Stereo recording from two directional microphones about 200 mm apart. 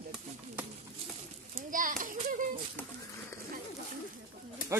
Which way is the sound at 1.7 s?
40° right (ahead or behind).